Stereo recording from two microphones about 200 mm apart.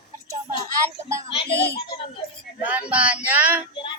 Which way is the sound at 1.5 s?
55° left (ahead or behind).